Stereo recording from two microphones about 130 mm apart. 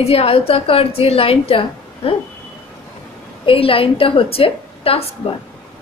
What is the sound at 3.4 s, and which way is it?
A woman's voice, 45° left (ahead or behind).